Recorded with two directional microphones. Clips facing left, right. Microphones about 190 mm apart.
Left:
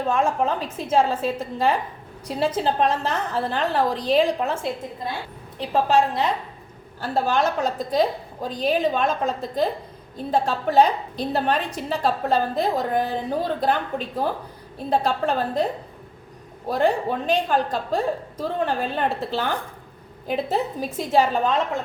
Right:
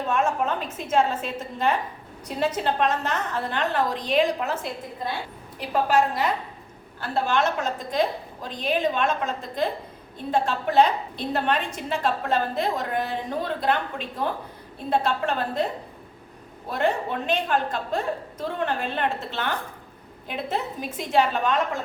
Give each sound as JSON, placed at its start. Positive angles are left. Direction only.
{"t": 0.1, "sound": "a woman's voice", "side_deg": 30}
{"t": 16.6, "sound": "a woman's voice", "side_deg": 35}